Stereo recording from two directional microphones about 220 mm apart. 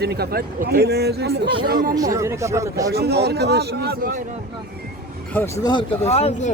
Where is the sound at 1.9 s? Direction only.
15° right (ahead or behind).